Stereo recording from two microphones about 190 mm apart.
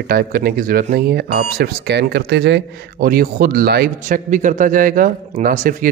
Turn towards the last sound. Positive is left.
turn(degrees=-45)  # may be behind; listen again after turning